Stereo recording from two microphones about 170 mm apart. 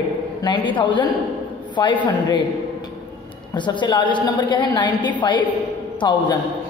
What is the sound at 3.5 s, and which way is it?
A woman's voice, 25° left (ahead or behind).